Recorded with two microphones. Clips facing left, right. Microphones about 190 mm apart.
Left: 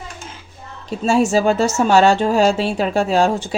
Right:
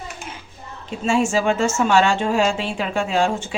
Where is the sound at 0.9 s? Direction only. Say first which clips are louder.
Left 4 dB; 40° left (ahead or behind).